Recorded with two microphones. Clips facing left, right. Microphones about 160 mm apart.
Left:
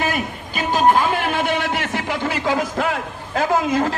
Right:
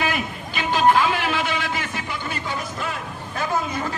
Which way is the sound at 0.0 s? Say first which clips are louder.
Left 2 dB; 45° left (ahead or behind).